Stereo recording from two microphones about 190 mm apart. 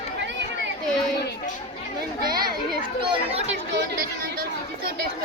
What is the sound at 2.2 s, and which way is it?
Children playing, 20° right (ahead or behind).